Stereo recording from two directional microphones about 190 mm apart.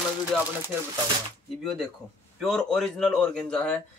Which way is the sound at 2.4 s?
Centre (ahead or behind).